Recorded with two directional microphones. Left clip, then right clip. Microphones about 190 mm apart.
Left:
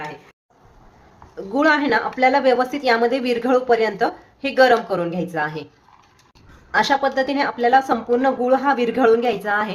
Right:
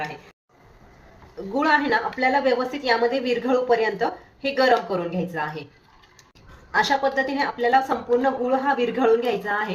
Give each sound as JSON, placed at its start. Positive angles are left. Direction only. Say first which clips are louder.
{"t": 1.5, "sound": "a woman's voice", "louder": "left 3 dB", "side_deg": 25}
{"t": 6.7, "sound": "a woman's voice", "louder": "left 3 dB", "side_deg": 25}